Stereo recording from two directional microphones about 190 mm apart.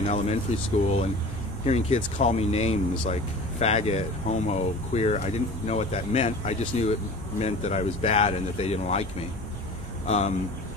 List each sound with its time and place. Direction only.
0.0 s speech: 35° left (ahead or behind)
1.7 s speech: 35° left (ahead or behind)
10.0 s speech: 35° left (ahead or behind)